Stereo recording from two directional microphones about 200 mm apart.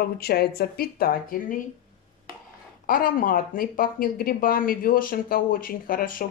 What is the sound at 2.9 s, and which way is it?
A woman's voice, 45° left (ahead or behind).